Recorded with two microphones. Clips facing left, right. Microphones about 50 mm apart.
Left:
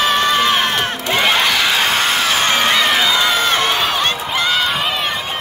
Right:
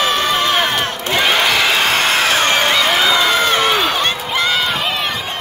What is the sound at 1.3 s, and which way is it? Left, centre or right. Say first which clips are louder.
Crowd: right 2 dB; centre.